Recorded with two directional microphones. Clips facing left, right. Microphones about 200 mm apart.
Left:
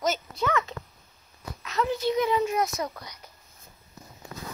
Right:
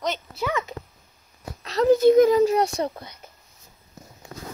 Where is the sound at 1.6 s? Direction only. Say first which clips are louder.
Right 11 dB; 35° right (ahead or behind).